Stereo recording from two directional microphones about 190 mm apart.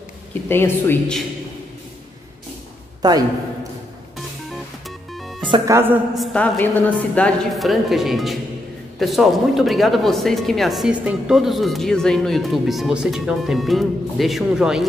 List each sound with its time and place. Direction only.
0.3 s speech: 10° left (ahead or behind)
3.0 s a man's voice: 20° right (ahead or behind)
5.5 s a man's voice: 15° right (ahead or behind)
6.1 s speech: 5° left (ahead or behind)